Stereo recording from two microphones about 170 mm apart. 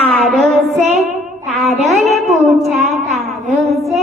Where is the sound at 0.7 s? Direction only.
40° right (ahead or behind).